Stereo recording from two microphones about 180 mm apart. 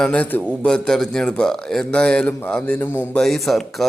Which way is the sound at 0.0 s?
5° left (ahead or behind).